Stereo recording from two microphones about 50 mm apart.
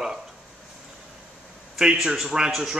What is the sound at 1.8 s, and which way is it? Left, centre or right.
Speech, centre.